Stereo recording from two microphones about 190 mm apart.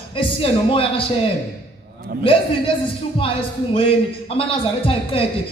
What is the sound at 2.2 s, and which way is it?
Speech, 30° left (ahead or behind).